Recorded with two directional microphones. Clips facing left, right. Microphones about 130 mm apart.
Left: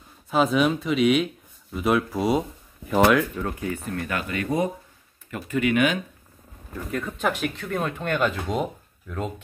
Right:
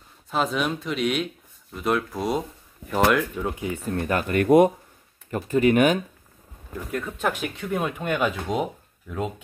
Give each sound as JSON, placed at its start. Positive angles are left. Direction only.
{"t": 0.3, "sound": "speech", "side_deg": 0}
{"t": 3.4, "sound": "speech", "side_deg": -15}
{"t": 3.8, "sound": "speech", "side_deg": -35}
{"t": 6.9, "sound": "speech", "side_deg": -5}